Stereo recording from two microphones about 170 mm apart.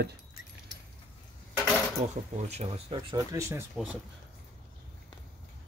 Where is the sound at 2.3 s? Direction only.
40° right (ahead or behind).